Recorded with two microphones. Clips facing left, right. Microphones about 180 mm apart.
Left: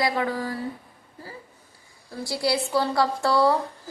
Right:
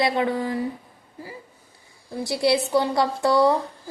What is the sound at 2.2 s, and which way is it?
A woman's voice, 20° right (ahead or behind).